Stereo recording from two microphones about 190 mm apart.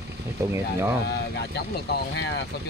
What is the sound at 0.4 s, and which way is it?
Speech, 15° right (ahead or behind).